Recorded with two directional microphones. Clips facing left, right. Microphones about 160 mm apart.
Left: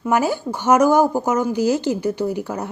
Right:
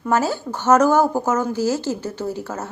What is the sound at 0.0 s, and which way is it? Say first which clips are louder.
A woman's voice: left 1 dB; 15° left (ahead or behind).